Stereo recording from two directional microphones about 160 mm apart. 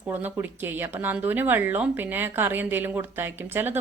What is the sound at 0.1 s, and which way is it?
Speech, 15° right (ahead or behind).